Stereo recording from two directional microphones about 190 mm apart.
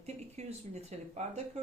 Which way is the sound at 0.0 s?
35° right (ahead or behind).